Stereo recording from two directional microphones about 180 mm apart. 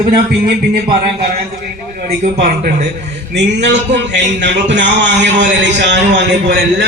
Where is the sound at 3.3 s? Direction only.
75° right (ahead or behind).